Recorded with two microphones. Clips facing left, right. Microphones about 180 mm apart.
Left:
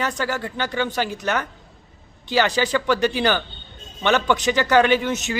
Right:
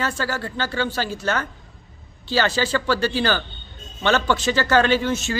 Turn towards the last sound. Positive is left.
turn(degrees=20)  # may be behind; listen again after turning